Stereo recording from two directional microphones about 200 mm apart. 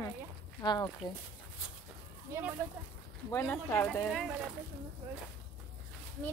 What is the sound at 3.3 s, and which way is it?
Speech, 10° left (ahead or behind).